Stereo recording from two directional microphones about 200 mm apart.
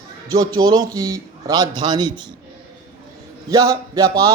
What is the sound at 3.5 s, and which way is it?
Speech, 20° right (ahead or behind).